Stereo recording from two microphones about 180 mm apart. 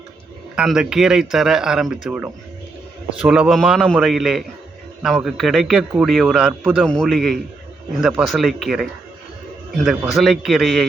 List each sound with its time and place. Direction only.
0.5 s speech: 5° right (ahead or behind)